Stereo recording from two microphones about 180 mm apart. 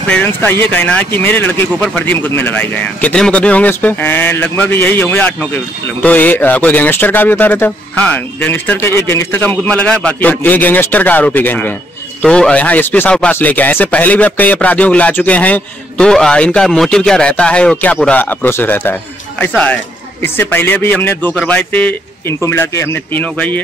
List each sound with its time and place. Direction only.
0.1 s speech: 10° left (ahead or behind)